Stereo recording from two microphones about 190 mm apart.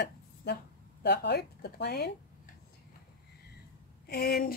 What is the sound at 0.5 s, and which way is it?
Speech, 60° left (ahead or behind).